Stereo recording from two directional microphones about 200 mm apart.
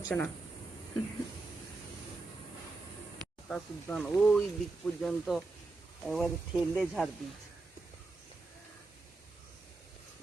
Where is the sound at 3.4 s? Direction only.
Centre (ahead or behind).